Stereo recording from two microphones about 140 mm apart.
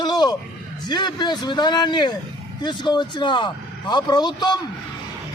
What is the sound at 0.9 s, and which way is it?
A man's voice, 30° left (ahead or behind).